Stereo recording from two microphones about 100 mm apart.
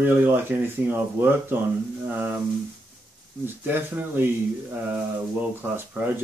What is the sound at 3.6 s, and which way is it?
Speech, 20° right (ahead or behind).